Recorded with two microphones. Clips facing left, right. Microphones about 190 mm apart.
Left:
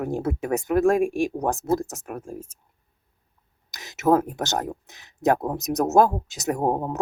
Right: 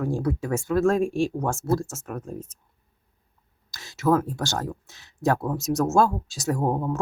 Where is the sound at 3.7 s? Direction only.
20° left (ahead or behind).